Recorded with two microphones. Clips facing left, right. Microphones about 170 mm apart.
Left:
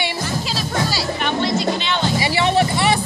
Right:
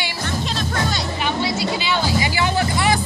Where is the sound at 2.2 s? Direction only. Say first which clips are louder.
Left 3 dB; 30° left (ahead or behind).